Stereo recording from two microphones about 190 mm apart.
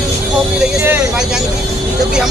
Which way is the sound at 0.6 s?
5° right (ahead or behind).